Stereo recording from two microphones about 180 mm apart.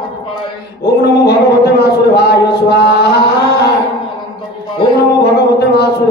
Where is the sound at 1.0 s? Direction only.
65° left (ahead or behind).